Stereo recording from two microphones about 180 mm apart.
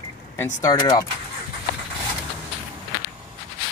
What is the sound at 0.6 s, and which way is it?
Speech, 20° left (ahead or behind).